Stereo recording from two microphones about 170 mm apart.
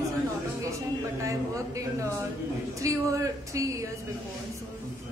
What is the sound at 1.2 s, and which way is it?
Speech, 20° right (ahead or behind).